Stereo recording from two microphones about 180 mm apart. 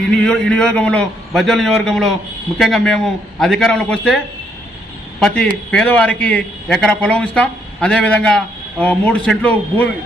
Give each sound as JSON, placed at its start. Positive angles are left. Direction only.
{"t": 0.1, "sound": "a man's voice", "side_deg": 5}
{"t": 5.2, "sound": "a man's voice", "side_deg": 5}